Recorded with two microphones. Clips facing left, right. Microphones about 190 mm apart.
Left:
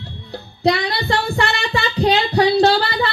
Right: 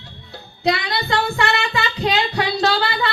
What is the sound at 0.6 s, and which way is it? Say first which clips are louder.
Child singing: left 3 dB; 30° left (ahead or behind).